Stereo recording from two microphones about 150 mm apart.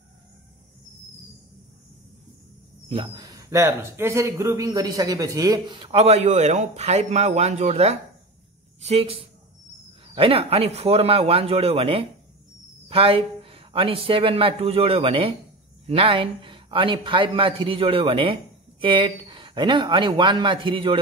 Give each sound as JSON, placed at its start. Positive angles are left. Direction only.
{"t": 2.9, "sound": "speech", "side_deg": -30}